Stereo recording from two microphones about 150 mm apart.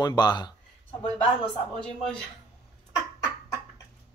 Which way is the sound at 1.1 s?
5° left (ahead or behind).